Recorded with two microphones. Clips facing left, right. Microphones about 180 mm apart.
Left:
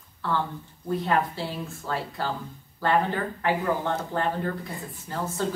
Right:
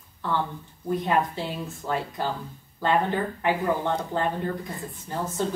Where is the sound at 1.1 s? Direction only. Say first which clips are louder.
Even; 15° right (ahead or behind).